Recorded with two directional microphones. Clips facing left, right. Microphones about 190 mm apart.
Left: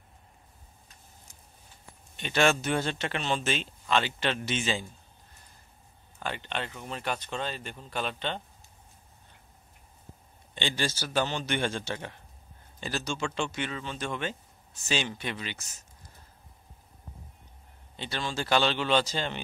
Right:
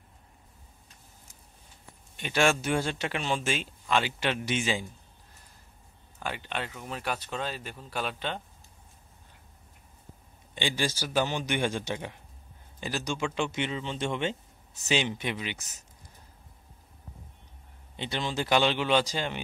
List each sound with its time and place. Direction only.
2.1 s speech: 10° right (ahead or behind)
6.1 s speech: 10° right (ahead or behind)
10.5 s speech: 10° right (ahead or behind)
17.9 s speech: 20° right (ahead or behind)